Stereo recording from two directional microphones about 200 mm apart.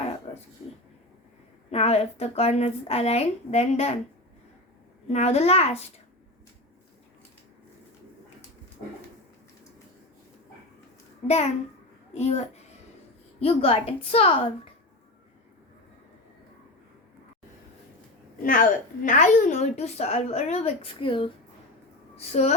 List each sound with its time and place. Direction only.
1.7 s a woman's voice: 30° left (ahead or behind)
5.0 s a woman's voice: 35° left (ahead or behind)
12.1 s a woman's voice: 35° left (ahead or behind)
18.4 s a woman's voice: 40° left (ahead or behind); by 21.2 s 25° left (ahead or behind)
22.3 s a woman's voice: 35° left (ahead or behind)